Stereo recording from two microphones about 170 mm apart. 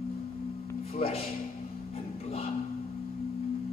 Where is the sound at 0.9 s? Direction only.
35° left (ahead or behind).